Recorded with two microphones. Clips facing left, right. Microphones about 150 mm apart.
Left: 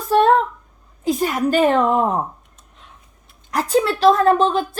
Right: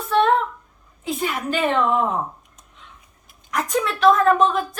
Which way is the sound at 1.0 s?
40° left (ahead or behind).